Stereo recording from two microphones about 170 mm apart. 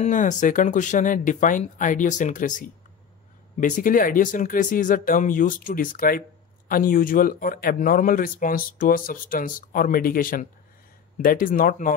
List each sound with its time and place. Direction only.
0.0 s speech: 45° left (ahead or behind)